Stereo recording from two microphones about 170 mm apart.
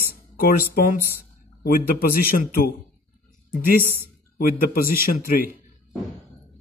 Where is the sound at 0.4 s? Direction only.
60° left (ahead or behind).